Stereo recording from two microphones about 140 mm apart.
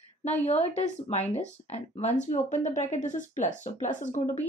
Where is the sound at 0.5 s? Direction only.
50° left (ahead or behind).